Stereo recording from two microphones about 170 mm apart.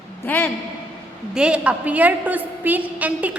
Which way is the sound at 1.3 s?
5° right (ahead or behind).